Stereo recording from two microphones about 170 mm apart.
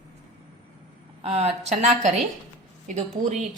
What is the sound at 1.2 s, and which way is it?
A woman's voice, 35° right (ahead or behind).